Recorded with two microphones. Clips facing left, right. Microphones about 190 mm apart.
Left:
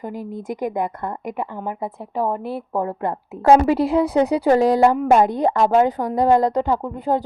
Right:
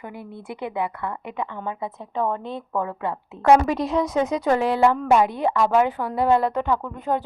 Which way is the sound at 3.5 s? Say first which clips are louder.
Left 3 dB; 30° left (ahead or behind).